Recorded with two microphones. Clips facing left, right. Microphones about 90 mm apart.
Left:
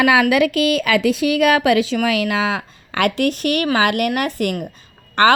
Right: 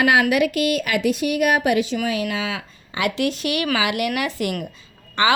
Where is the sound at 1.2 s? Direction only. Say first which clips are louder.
Left 4 dB; 90° left.